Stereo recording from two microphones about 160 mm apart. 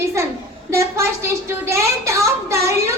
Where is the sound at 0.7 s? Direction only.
15° right (ahead or behind).